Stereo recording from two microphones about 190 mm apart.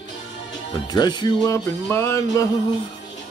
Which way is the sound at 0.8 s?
20° left (ahead or behind).